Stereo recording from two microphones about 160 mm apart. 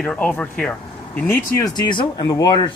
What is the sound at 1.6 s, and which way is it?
Speech, 25° left (ahead or behind).